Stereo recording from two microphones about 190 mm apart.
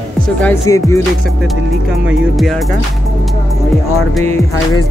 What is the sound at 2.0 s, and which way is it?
Music, centre (ahead or behind).